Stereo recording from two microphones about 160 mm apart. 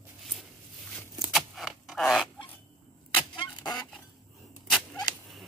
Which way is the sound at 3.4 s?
25° left (ahead or behind).